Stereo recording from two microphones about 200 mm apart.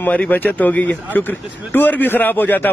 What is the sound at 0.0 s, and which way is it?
Speech, 10° left (ahead or behind).